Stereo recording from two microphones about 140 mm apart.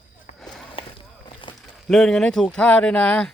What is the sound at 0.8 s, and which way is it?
Walk, 40° left (ahead or behind).